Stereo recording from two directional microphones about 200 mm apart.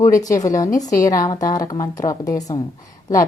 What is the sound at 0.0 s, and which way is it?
A woman's voice, 15° left (ahead or behind).